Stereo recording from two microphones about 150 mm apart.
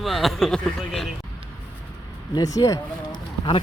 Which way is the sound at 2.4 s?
25° left (ahead or behind).